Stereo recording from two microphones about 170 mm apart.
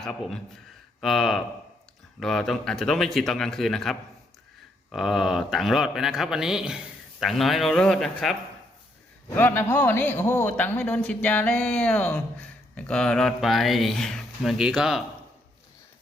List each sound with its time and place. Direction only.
0.0 s a man's voice: centre (ahead or behind)